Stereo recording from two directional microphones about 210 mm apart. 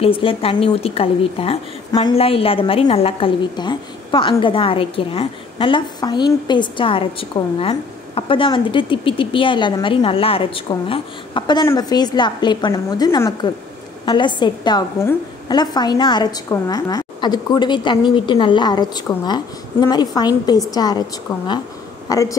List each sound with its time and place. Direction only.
0.0 s a woman's voice: 25° left (ahead or behind)
22.1 s speech: 15° left (ahead or behind)